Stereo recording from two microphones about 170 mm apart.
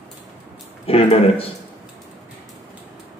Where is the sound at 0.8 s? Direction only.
35° left (ahead or behind).